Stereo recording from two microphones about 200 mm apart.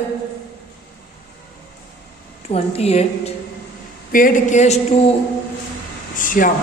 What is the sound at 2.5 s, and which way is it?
Speech, 30° left (ahead or behind).